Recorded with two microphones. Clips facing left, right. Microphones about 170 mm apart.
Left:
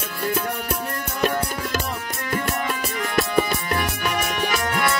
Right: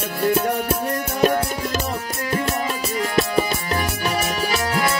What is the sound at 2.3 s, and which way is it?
Music, 30° right (ahead or behind).